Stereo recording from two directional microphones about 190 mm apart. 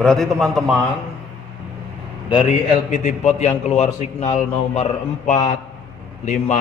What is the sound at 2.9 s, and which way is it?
A man's voice, 40° left (ahead or behind).